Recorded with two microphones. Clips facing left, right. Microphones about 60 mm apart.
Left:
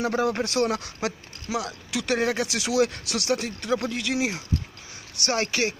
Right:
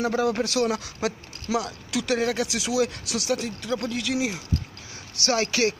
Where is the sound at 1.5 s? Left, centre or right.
Centre.